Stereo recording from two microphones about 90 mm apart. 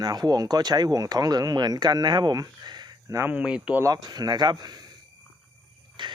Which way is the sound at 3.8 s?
45° right (ahead or behind).